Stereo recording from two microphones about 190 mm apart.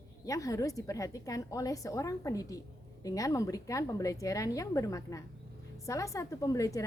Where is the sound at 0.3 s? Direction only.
15° left (ahead or behind).